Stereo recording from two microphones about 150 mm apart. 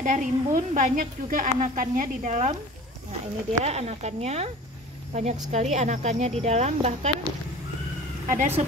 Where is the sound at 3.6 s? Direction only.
45° right (ahead or behind).